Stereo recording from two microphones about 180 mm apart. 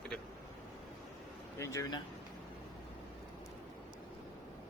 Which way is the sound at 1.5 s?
15° left (ahead or behind).